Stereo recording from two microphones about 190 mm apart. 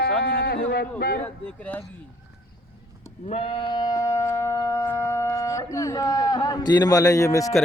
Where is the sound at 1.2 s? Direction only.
10° left (ahead or behind).